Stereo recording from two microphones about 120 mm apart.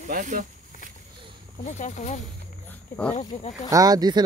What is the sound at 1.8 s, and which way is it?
Speech, 80° left.